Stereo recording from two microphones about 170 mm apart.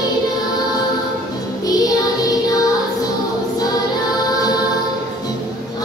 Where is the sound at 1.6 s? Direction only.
20° left (ahead or behind).